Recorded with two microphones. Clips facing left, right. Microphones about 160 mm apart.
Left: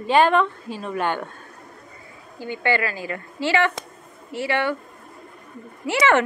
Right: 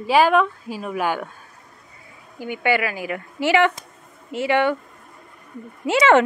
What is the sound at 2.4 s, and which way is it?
Speech, 15° right (ahead or behind).